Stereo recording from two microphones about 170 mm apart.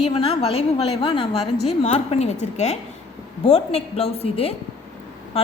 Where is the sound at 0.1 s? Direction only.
35° left (ahead or behind).